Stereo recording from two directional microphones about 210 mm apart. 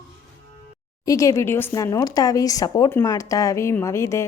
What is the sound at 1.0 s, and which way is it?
Speech, 15° left (ahead or behind).